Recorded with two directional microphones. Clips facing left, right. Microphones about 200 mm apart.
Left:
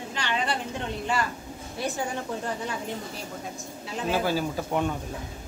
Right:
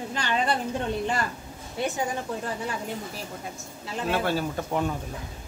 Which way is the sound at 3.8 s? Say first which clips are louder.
Even; centre (ahead or behind).